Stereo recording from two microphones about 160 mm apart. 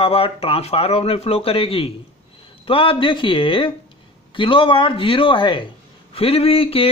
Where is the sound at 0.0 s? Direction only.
35° left (ahead or behind).